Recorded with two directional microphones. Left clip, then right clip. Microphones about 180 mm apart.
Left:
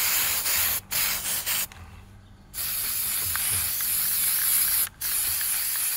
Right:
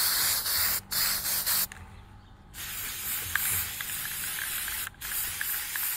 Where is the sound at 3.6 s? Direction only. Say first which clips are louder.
Left 4 dB; 65° left (ahead or behind).